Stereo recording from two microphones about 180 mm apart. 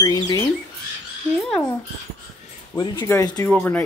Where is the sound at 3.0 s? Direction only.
15° left (ahead or behind).